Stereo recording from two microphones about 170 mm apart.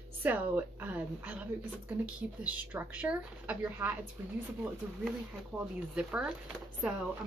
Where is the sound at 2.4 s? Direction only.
10° right (ahead or behind).